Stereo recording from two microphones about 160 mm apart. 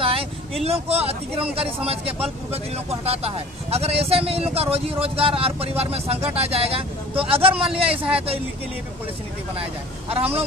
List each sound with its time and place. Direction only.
0.0 s vehicle: 35° right (ahead or behind)
0.7 s speech: 40° right (ahead or behind)
9.6 s speech: 35° right (ahead or behind)